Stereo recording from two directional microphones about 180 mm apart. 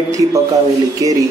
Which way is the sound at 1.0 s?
20° right (ahead or behind).